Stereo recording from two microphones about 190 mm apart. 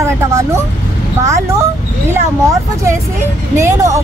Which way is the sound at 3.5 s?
15° right (ahead or behind).